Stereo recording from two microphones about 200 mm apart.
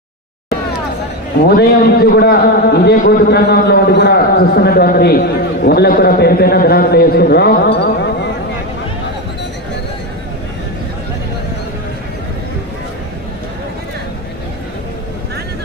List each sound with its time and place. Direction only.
1.5 s a man's voice: 50° left (ahead or behind)